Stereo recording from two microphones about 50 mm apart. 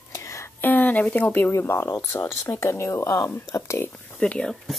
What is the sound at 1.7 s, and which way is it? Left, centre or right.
Speech, left.